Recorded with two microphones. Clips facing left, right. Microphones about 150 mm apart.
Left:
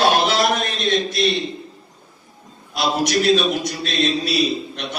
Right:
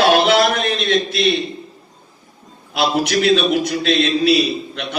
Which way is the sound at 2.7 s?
55° right (ahead or behind).